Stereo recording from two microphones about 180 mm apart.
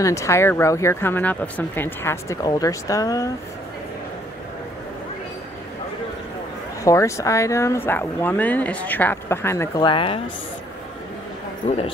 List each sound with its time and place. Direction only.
0.0 s speech: 15° left (ahead or behind)
6.8 s speech: 15° left (ahead or behind)
9.8 s a woman's voice: 30° left (ahead or behind)
11.6 s speech: 30° left (ahead or behind)